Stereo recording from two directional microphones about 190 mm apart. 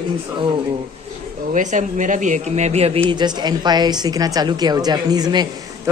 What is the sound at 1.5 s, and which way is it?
Speech, 40° right (ahead or behind).